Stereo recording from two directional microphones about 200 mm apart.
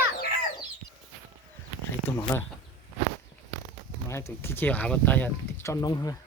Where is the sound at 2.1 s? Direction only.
10° left (ahead or behind).